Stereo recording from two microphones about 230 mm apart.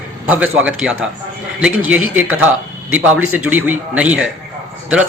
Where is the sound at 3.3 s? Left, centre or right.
Centre.